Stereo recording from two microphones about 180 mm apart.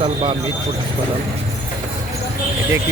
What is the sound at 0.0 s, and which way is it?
Speech, 30° right (ahead or behind).